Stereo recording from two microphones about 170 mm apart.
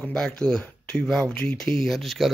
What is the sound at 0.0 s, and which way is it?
A man's voice, 5° left (ahead or behind).